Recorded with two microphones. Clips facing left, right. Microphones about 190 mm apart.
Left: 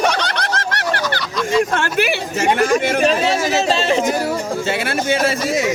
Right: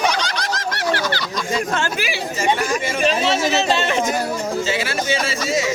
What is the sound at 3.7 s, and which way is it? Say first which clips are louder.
Speech: left 3 dB; 30° left (ahead or behind).